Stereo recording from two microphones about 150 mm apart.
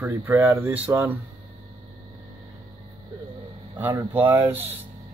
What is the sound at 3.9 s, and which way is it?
Speech, 15° right (ahead or behind).